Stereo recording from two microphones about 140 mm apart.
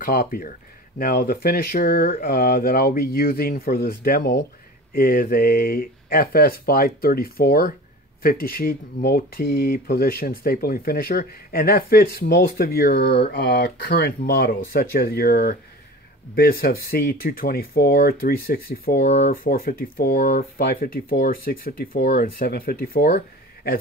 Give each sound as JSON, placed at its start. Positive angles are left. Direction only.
{"t": 0.0, "sound": "speech", "side_deg": 90}